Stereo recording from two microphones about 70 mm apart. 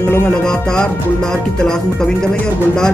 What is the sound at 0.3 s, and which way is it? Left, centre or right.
Speech, centre.